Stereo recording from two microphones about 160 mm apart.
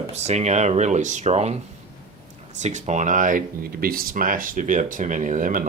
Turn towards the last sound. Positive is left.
turn(degrees=-60)  # may be behind; listen again after turning